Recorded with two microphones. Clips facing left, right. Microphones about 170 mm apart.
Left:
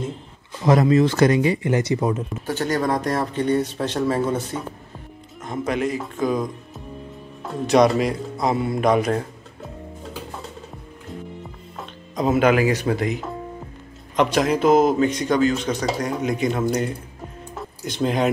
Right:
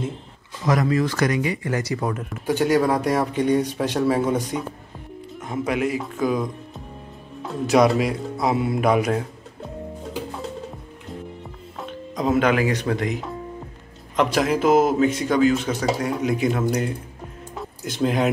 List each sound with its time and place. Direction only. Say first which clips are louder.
0.7 s speech: left 4 dB; 25° left (ahead or behind)
2.4 s speech: right 4 dB; 10° right (ahead or behind)
11.8 s speech: left 1 dB; 5° left (ahead or behind)
17.6 s music: right 1 dB; 5° right (ahead or behind)